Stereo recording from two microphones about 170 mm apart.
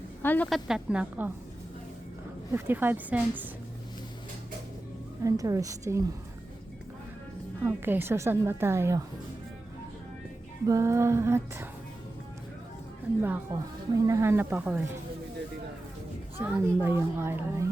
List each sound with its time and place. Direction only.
0.2 s speech: 10° left (ahead or behind)
0.7 s speech: 5° right (ahead or behind)
2.5 s speech: 15° right (ahead or behind)
5.2 s a woman's voice: 20° right (ahead or behind)
7.6 s speech: 10° right (ahead or behind)
10.7 s speech: 20° right (ahead or behind)
13.2 s speech: 15° right (ahead or behind)
16.4 s speech: 15° right (ahead or behind)